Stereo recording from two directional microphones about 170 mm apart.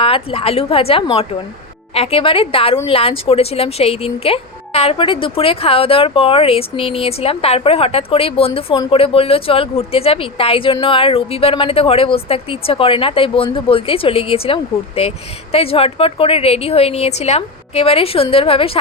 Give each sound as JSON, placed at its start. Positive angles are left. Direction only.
{"t": 0.0, "sound": "speech", "side_deg": 35}